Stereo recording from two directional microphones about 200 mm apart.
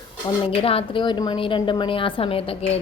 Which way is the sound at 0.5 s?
30° left (ahead or behind).